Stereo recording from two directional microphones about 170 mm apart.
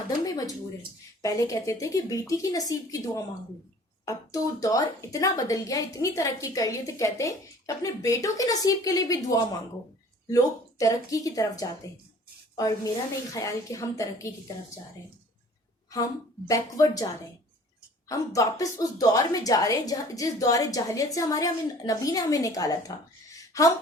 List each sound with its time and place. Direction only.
0.3 s a sound: 20° left (ahead or behind)
1.2 s a woman's voice: 20° left (ahead or behind)
16.5 s a woman's voice: 20° left (ahead or behind)
18.1 s a woman's voice: 20° left (ahead or behind)